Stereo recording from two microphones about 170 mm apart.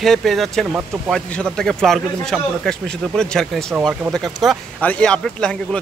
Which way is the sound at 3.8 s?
10° right (ahead or behind).